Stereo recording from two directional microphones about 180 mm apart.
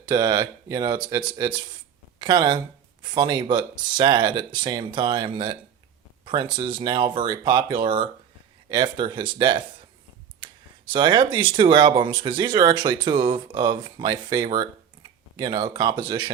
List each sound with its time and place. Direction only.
0.0 s speech: 20° right (ahead or behind)